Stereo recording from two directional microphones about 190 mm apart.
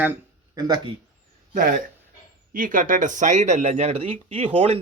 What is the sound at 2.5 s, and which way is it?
Speech, 45° right (ahead or behind).